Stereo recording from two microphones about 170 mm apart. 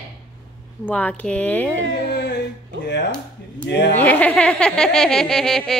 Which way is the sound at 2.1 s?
90° left.